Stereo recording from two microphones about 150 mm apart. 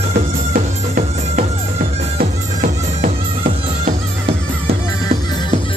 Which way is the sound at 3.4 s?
45° right (ahead or behind).